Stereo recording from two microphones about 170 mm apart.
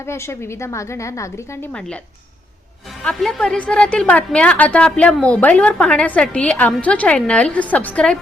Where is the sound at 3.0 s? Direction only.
5° left (ahead or behind).